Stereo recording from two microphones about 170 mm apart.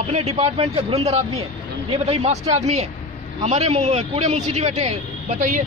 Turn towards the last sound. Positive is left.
turn(degrees=-50)  # may be behind; listen again after turning